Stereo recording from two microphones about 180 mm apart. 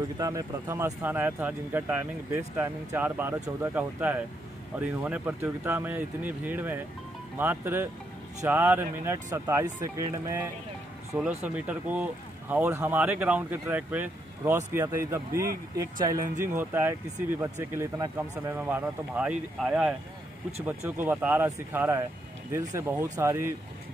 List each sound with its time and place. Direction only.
0.2 s speech: 20° right (ahead or behind)